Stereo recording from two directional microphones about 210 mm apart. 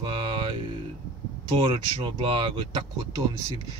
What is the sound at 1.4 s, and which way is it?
Speech, 25° right (ahead or behind).